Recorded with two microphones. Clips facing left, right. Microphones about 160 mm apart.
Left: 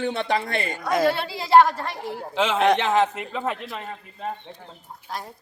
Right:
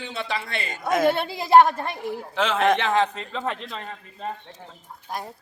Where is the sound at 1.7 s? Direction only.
55° right (ahead or behind).